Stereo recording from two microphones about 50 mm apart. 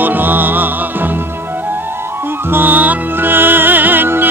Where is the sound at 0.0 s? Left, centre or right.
Right.